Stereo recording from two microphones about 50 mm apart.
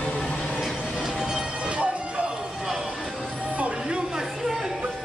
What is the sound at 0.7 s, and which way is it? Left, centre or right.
Music, left.